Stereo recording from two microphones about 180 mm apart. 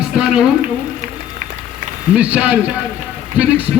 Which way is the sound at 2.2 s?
5° right (ahead or behind).